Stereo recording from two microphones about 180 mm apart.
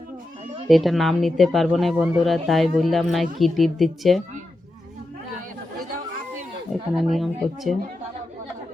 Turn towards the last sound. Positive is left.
turn(degrees=0)  # may be behind; listen again after turning